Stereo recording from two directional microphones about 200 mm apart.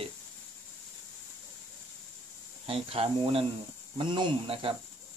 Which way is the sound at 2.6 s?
30° right (ahead or behind).